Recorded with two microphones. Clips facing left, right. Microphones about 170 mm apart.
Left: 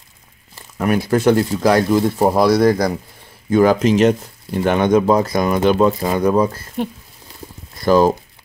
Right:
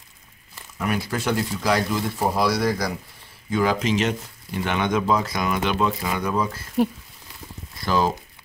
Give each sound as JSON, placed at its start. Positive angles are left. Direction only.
{"t": 0.7, "sound": "speech", "side_deg": 50}
{"t": 7.8, "sound": "speech", "side_deg": 45}